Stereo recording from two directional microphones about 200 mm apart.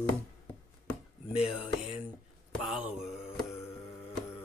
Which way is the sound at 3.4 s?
10° left (ahead or behind).